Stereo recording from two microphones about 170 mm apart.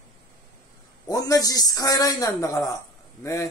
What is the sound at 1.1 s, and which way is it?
Speech, 20° left (ahead or behind).